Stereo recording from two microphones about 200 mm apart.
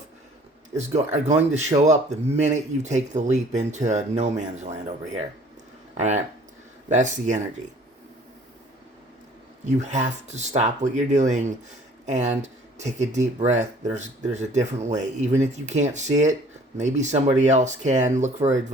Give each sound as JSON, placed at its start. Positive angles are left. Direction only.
{"t": 0.8, "sound": "speech", "side_deg": -35}
{"t": 6.8, "sound": "speech", "side_deg": -35}
{"t": 9.6, "sound": "speech", "side_deg": -35}